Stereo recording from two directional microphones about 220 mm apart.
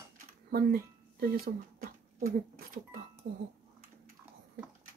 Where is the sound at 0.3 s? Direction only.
45° right (ahead or behind).